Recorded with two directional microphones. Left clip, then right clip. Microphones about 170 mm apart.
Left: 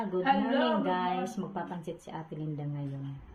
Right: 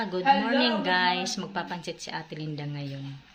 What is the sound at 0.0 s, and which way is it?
Speech, 10° right (ahead or behind).